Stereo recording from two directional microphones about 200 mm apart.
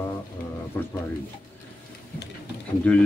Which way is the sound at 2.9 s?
5° left (ahead or behind).